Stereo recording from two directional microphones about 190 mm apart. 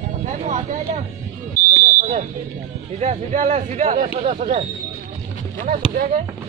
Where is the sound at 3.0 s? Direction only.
40° right (ahead or behind).